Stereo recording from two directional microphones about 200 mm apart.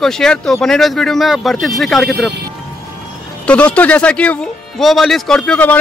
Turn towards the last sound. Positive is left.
turn(degrees=5)  # may be behind; listen again after turning